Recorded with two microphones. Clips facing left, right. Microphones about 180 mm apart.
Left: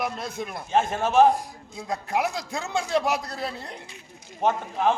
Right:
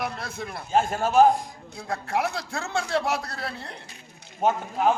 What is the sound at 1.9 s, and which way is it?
A man's voice, 20° left (ahead or behind).